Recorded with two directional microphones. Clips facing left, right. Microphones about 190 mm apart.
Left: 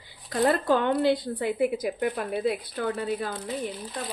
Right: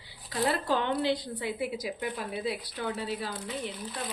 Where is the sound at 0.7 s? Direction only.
50° left (ahead or behind).